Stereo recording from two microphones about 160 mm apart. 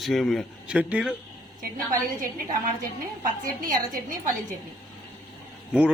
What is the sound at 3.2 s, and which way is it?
Speech, 60° right (ahead or behind).